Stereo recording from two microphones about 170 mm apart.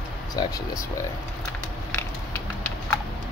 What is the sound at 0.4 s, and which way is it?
Speech, 25° left (ahead or behind).